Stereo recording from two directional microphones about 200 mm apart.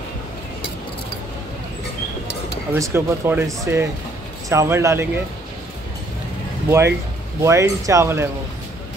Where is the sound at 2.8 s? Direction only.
15° right (ahead or behind).